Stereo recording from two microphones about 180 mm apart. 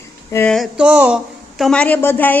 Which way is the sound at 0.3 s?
5° left (ahead or behind).